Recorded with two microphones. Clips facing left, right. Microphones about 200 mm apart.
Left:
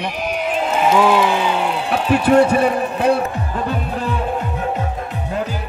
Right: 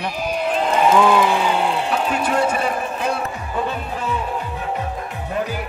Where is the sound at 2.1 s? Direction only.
60° left (ahead or behind).